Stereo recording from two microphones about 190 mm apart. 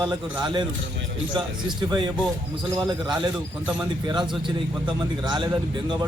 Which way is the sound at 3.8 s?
25° right (ahead or behind).